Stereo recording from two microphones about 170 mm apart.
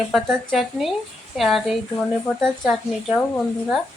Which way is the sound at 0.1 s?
Centre (ahead or behind).